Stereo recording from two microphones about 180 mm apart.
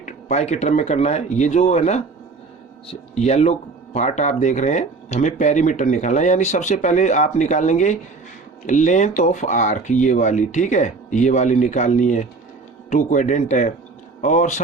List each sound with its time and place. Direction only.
0.0 s speech: 35° left (ahead or behind)